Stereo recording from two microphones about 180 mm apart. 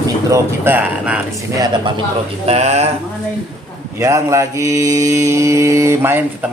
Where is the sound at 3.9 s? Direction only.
15° right (ahead or behind).